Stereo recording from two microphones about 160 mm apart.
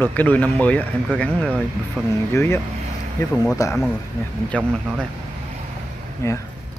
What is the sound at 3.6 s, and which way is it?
Speech, 20° left (ahead or behind).